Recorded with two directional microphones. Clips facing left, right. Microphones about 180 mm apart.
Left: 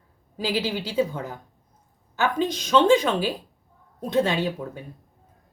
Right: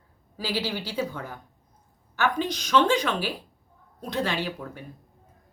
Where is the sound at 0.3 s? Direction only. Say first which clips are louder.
Left 3 dB; 25° left (ahead or behind).